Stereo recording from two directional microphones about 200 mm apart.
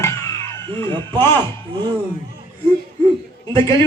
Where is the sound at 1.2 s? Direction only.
10° left (ahead or behind).